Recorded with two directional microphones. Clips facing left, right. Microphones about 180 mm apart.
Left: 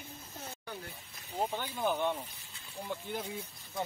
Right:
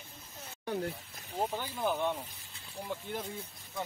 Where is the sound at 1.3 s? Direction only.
5° right (ahead or behind).